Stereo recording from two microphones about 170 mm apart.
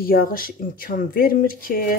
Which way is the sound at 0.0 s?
60° left (ahead or behind).